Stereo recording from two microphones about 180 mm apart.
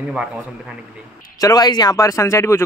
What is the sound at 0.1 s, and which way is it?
Speech, 5° right (ahead or behind).